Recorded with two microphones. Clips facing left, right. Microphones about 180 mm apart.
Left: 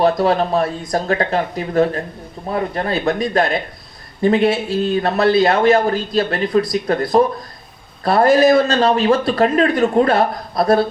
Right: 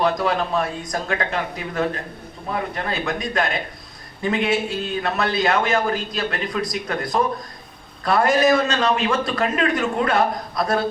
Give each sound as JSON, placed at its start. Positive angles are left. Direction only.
{"t": 0.0, "sound": "a man's voice", "side_deg": 35}